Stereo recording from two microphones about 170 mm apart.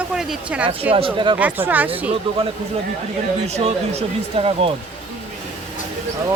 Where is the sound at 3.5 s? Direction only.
40° right (ahead or behind).